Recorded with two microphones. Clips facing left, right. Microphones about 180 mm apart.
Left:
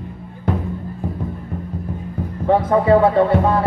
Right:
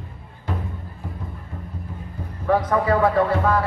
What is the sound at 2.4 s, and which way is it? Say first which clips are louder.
Speech: left 4 dB; 25° left (ahead or behind).